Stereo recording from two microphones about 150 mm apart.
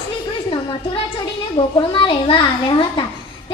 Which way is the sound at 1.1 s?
35° left (ahead or behind).